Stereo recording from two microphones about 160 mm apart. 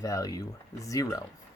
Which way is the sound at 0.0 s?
20° left (ahead or behind).